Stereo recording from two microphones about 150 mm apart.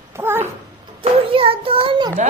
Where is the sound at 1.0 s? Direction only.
40° right (ahead or behind).